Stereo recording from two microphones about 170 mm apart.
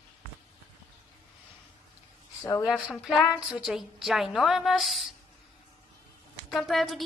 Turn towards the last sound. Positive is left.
turn(degrees=0)  # may be behind; listen again after turning